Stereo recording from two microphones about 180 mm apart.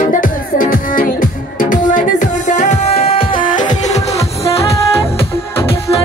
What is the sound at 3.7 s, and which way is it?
Music, 40° left (ahead or behind).